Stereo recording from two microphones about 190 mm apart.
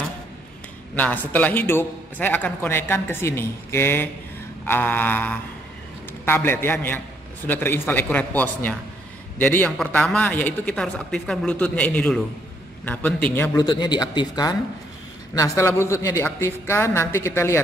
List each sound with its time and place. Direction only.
0.9 s speech: 10° left (ahead or behind)